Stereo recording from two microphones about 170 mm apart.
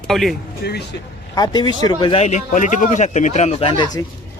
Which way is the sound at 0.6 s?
70° left (ahead or behind).